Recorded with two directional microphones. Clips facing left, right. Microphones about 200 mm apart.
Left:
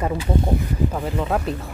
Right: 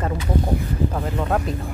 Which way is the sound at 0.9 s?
Centre (ahead or behind).